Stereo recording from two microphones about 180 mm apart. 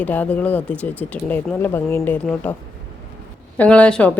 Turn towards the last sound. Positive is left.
turn(degrees=5)  # may be behind; listen again after turning